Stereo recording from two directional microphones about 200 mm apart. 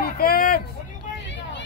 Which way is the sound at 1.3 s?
65° left (ahead or behind).